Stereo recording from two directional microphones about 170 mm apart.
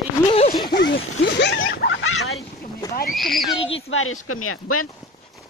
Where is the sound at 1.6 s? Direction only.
70° left (ahead or behind).